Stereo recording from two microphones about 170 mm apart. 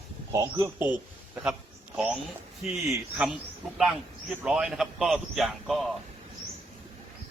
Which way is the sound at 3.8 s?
5° right (ahead or behind).